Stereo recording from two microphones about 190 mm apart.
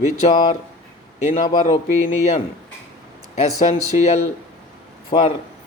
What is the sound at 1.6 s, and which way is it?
Speech, 40° left (ahead or behind).